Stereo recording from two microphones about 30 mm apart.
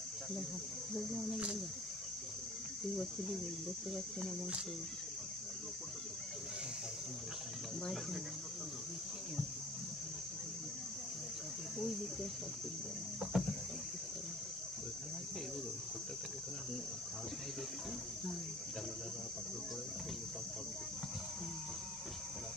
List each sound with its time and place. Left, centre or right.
0.9 s speech: centre
11.8 s speech: centre
13.3 s a sound: centre